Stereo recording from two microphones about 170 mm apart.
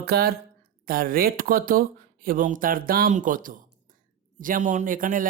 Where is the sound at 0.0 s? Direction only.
65° right (ahead or behind).